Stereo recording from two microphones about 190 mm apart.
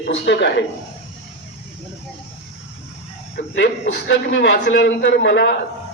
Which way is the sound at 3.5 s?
65° left (ahead or behind).